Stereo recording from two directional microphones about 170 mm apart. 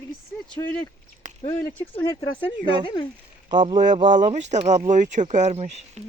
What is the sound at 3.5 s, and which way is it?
Speech, 25° right (ahead or behind).